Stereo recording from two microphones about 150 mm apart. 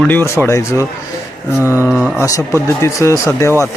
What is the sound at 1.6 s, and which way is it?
Speech, 15° right (ahead or behind).